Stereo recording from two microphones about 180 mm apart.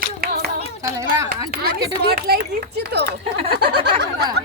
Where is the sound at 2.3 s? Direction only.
60° right (ahead or behind).